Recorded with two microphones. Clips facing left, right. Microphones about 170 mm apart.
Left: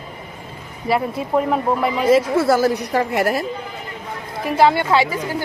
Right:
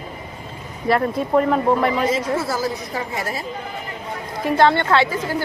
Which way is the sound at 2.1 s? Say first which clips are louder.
Left 7 dB; 65° left (ahead or behind).